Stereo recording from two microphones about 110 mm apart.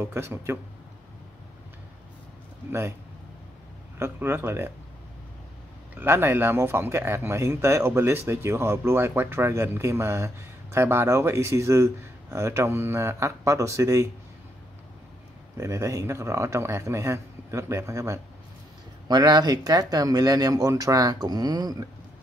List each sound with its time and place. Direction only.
0.0 s speech: 25° right (ahead or behind)
4.0 s speech: 20° right (ahead or behind)
5.9 s speech: 20° right (ahead or behind)
15.5 s speech: 30° right (ahead or behind)
19.0 s speech: 40° right (ahead or behind)